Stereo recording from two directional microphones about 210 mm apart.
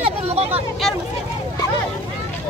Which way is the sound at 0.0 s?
30° right (ahead or behind).